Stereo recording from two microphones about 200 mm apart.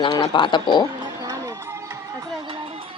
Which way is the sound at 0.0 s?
20° left (ahead or behind).